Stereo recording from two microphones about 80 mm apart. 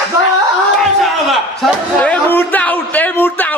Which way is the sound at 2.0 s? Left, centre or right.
Left.